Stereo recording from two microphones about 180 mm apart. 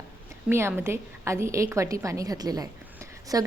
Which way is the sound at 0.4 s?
10° right (ahead or behind).